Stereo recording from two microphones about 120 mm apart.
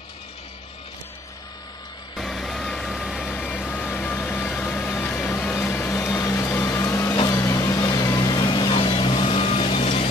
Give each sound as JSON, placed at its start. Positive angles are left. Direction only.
{"t": 2.1, "sound": "vehicle", "side_deg": 0}
{"t": 3.3, "sound": "vehicle", "side_deg": 10}
{"t": 4.9, "sound": "a sound", "side_deg": 15}
{"t": 7.2, "sound": "vehicle", "side_deg": 30}